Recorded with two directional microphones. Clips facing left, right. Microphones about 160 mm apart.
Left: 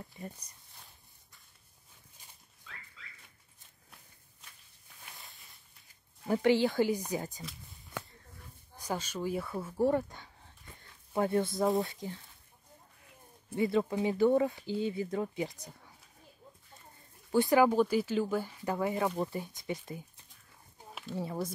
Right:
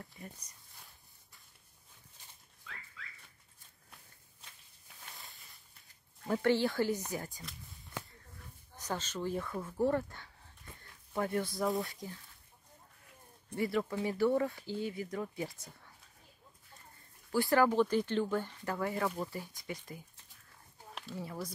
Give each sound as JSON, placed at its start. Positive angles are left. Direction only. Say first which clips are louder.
{"t": 5.1, "sound": "walk", "louder": "even", "side_deg": 0}
{"t": 6.2, "sound": "speech", "louder": "left 3 dB", "side_deg": 15}
{"t": 8.7, "sound": "speech", "louder": "left 2 dB", "side_deg": 10}
{"t": 13.6, "sound": "speech", "louder": "left 4 dB", "side_deg": 20}
{"t": 17.3, "sound": "speech", "louder": "left 3 dB", "side_deg": 20}
{"t": 21.1, "sound": "speech", "louder": "left 6 dB", "side_deg": 25}